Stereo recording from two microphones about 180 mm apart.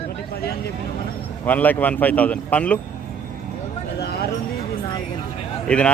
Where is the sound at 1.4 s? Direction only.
10° left (ahead or behind).